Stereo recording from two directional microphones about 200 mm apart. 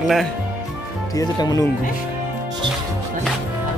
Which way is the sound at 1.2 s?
20° left (ahead or behind).